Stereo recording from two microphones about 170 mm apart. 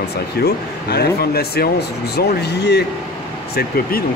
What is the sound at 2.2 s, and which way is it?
Speech, 75° left (ahead or behind).